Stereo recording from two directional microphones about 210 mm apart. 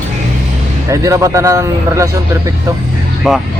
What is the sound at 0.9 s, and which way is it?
A man's voice, 15° right (ahead or behind).